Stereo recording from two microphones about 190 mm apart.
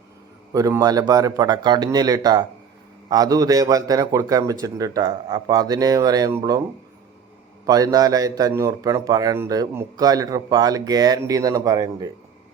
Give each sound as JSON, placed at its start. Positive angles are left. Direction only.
{"t": 0.5, "sound": "a man's voice", "side_deg": -20}
{"t": 7.7, "sound": "a man's voice", "side_deg": -20}